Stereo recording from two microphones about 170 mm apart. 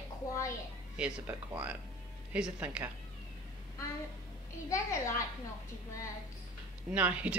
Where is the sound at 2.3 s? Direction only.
5° right (ahead or behind).